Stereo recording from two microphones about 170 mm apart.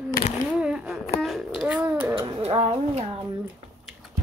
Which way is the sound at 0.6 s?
5° right (ahead or behind).